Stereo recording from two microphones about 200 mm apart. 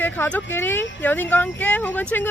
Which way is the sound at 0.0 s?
10° left (ahead or behind).